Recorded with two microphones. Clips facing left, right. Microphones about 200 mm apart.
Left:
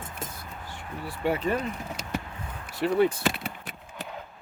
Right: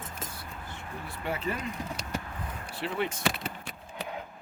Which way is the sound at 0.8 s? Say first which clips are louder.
Left 9 dB; 70° left (ahead or behind).